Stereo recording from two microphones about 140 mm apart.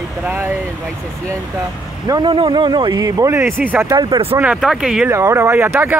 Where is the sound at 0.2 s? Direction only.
15° right (ahead or behind).